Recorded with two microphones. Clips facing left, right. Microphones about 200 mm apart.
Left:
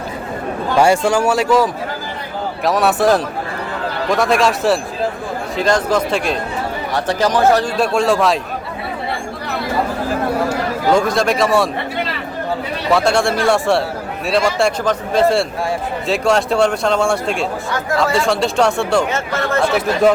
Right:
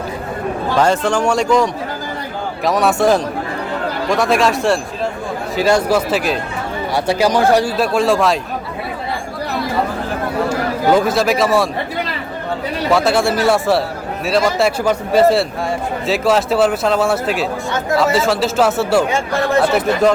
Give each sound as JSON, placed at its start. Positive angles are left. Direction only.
{"t": 0.8, "sound": "speech", "side_deg": 10}
{"t": 7.8, "sound": "speech", "side_deg": 0}
{"t": 10.9, "sound": "speech", "side_deg": -5}
{"t": 12.9, "sound": "speech", "side_deg": 0}